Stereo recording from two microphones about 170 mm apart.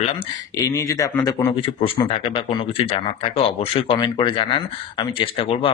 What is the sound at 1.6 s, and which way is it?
Speech, 30° left (ahead or behind).